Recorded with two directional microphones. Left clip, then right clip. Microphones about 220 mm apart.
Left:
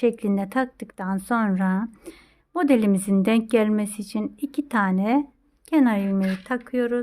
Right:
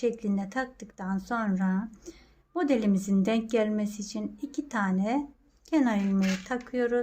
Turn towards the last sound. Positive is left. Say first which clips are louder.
# left 3 dB
turn(degrees=30)  # may be behind; listen again after turning